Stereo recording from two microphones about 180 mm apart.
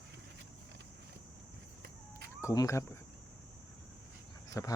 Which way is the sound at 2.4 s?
15° left (ahead or behind).